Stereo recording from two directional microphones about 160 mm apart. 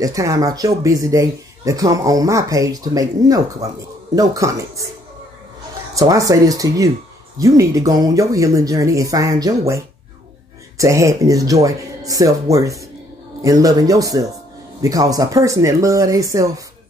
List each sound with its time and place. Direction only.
0.0 s speech: 20° right (ahead or behind)
5.9 s speech: 20° right (ahead or behind)